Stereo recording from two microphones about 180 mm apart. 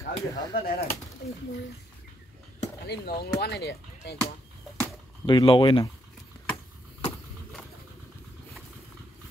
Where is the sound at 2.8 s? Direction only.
60° left (ahead or behind).